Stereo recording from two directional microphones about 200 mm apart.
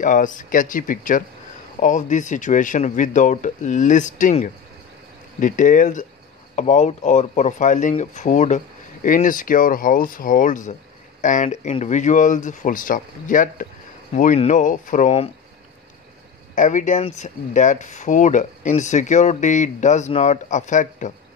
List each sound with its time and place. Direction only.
0.0 s speech: 40° left (ahead or behind)
16.5 s speech: 40° left (ahead or behind)